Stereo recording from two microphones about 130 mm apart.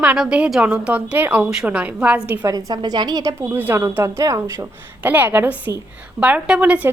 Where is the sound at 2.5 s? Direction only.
30° right (ahead or behind).